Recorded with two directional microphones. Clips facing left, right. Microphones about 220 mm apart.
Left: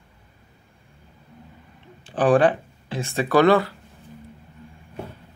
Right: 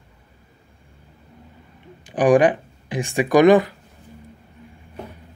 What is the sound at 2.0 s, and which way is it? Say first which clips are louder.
Speech: right 2 dB; 15° right (ahead or behind).